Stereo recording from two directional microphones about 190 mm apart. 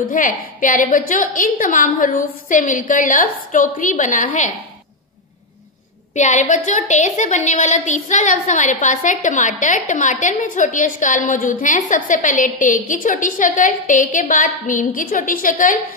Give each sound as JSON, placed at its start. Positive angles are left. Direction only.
{"t": 0.0, "sound": "a woman's voice", "side_deg": 45}
{"t": 6.1, "sound": "a woman's voice", "side_deg": 40}